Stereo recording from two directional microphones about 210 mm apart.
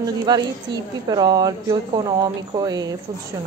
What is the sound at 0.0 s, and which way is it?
Speech, 20° right (ahead or behind).